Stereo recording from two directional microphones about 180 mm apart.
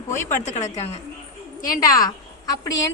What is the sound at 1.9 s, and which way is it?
Speech, 20° left (ahead or behind).